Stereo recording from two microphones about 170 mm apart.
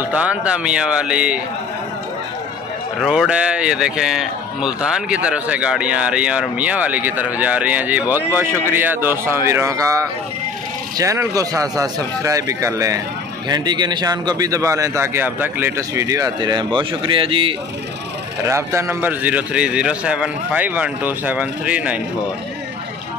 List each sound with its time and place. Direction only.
0.0 s speech: 5° right (ahead or behind)
3.0 s a man's voice: 5° right (ahead or behind); by 17.6 s 30° right (ahead or behind)
18.4 s speech: 15° right (ahead or behind)